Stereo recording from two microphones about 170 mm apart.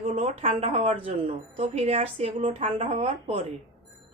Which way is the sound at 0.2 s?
40° right (ahead or behind).